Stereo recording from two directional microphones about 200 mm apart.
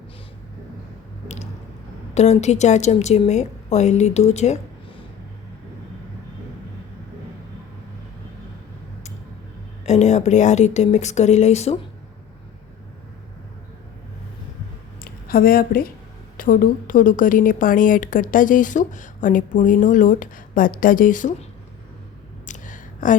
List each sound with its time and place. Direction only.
2.1 s a woman's voice: 35° left (ahead or behind)
9.8 s a woman's voice: 35° left (ahead or behind)
15.0 s a woman's voice: 45° left (ahead or behind)
22.4 s a sound: 40° left (ahead or behind)